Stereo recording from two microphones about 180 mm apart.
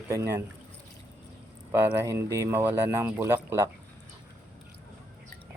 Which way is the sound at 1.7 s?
15° right (ahead or behind).